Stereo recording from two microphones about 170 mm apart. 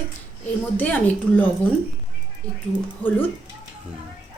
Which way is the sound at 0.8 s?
10° left (ahead or behind).